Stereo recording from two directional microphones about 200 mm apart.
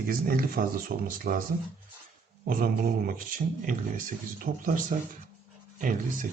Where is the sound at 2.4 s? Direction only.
45° right (ahead or behind).